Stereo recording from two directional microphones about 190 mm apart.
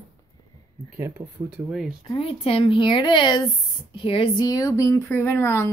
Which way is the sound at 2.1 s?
30° left (ahead or behind).